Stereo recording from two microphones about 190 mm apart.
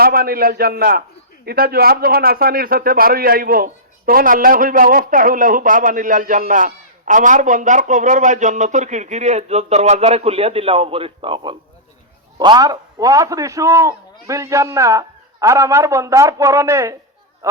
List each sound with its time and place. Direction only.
0.0 s a man's voice: 50° right (ahead or behind); by 17.6 s 15° right (ahead or behind)